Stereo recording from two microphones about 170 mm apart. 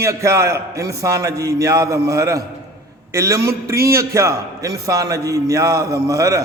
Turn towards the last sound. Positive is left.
turn(degrees=-20)  # may be behind; listen again after turning